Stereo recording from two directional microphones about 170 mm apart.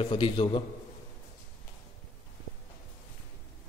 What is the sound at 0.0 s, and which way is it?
Speech, 30° left (ahead or behind).